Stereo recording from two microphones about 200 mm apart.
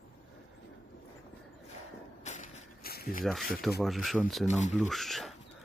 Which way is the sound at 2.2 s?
35° left (ahead or behind).